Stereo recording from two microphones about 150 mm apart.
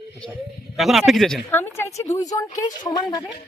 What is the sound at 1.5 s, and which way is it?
A woman's voice, 15° left (ahead or behind).